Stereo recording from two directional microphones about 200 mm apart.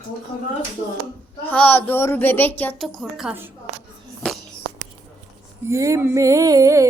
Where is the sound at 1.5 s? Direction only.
10° left (ahead or behind); by 3.5 s 5° right (ahead or behind).